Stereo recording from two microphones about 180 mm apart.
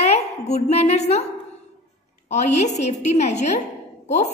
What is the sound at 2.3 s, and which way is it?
A woman's voice, 40° left (ahead or behind).